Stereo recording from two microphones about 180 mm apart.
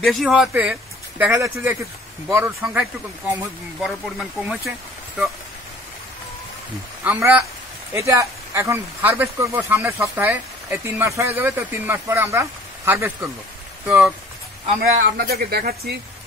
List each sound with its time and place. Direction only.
0.0 s speech: centre (ahead or behind)
7.1 s speech: 10° right (ahead or behind)
14.8 s speech: 55° right (ahead or behind)